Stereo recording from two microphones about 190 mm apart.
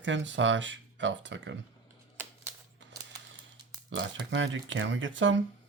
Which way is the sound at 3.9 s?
70° right (ahead or behind).